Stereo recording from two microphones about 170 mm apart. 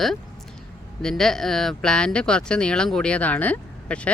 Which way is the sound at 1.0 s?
Centre (ahead or behind).